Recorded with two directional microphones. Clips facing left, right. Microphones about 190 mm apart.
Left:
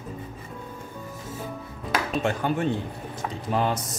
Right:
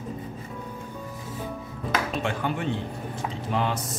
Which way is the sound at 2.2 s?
40° left (ahead or behind).